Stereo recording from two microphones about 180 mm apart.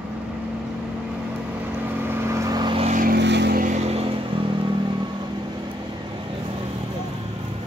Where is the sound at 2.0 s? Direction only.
15° right (ahead or behind).